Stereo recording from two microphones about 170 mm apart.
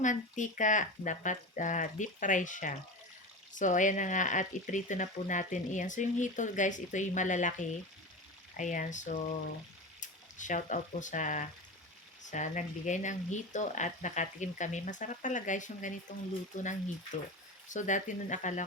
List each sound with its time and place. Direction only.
0.0 s speech: 45° left (ahead or behind)
17.7 s speech: 45° left (ahead or behind)